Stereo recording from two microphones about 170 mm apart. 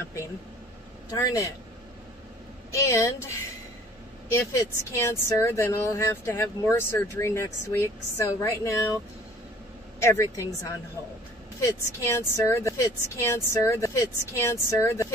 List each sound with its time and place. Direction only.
1.1 s speech: 20° left (ahead or behind)
2.7 s speech: 15° left (ahead or behind)
10.0 s speech: 15° left (ahead or behind)